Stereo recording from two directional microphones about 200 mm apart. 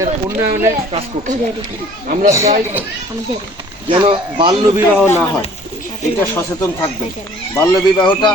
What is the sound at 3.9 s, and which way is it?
Speech, 25° right (ahead or behind).